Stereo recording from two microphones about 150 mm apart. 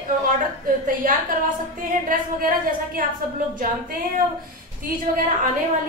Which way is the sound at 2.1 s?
70° right (ahead or behind).